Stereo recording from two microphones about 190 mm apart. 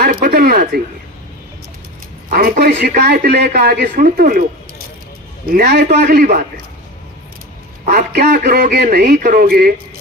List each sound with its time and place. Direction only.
0.0 s a sound: 50° right (ahead or behind)
2.3 s speech: 50° right (ahead or behind)
5.5 s a man's voice: 55° right (ahead or behind)
7.9 s speech: 55° right (ahead or behind)